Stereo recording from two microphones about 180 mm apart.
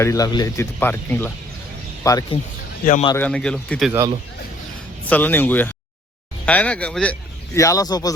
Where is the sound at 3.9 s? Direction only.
15° right (ahead or behind).